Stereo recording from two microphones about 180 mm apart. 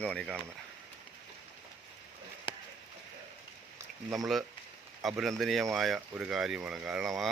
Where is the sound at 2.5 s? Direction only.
25° left (ahead or behind).